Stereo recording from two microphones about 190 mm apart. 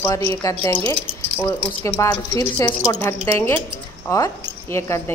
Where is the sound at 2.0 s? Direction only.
15° left (ahead or behind).